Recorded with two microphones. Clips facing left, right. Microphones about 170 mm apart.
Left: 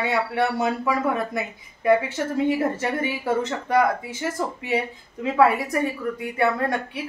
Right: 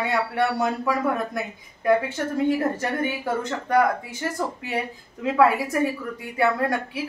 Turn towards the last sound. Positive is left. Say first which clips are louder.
# even
turn(degrees=0)  # may be behind; listen again after turning